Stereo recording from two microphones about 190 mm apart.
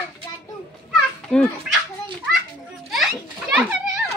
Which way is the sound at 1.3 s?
5° left (ahead or behind).